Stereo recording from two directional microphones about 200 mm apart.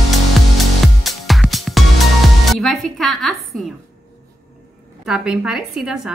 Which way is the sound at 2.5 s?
Centre (ahead or behind).